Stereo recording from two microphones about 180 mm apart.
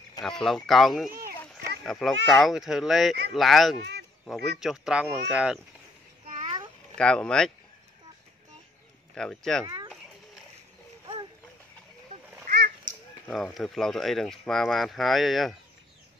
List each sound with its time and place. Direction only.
0.2 s speech: centre (ahead or behind)
7.0 s speech: 5° left (ahead or behind)
9.1 s speech: 5° left (ahead or behind)
12.4 s a sound: 50° right (ahead or behind)
13.3 s speech: centre (ahead or behind)